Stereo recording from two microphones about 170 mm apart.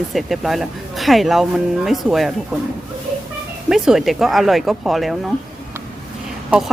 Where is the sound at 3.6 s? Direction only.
5° right (ahead or behind).